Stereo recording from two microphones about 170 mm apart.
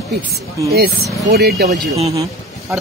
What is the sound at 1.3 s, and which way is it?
Speech, 75° right (ahead or behind).